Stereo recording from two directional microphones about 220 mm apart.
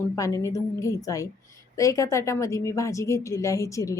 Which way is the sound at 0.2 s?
15° left (ahead or behind).